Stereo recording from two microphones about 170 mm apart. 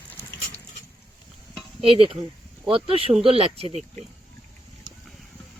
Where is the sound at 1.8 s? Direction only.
30° right (ahead or behind).